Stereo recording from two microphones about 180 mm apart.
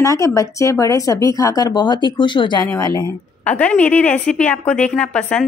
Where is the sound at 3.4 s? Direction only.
10° left (ahead or behind).